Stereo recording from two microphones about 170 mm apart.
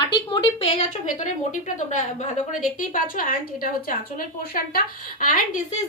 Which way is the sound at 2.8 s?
55° left (ahead or behind).